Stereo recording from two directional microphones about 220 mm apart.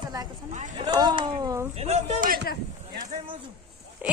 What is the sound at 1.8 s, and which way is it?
Speech, 30° right (ahead or behind).